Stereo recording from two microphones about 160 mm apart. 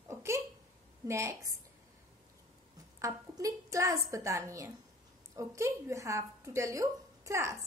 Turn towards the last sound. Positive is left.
turn(degrees=-20)  # may be behind; listen again after turning